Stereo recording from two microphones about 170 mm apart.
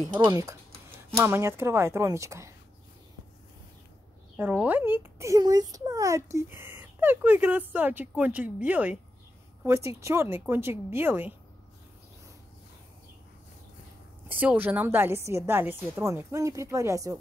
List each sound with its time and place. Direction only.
0.2 s speech: 15° right (ahead or behind)
4.4 s speech: 10° right (ahead or behind)
14.3 s speech: 10° right (ahead or behind)